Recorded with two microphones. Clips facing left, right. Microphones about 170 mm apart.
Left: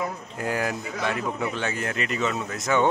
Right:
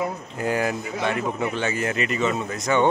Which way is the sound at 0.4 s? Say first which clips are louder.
Right 3 dB; centre (ahead or behind).